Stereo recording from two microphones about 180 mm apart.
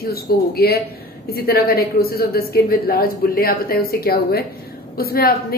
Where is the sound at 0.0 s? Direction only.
60° left (ahead or behind).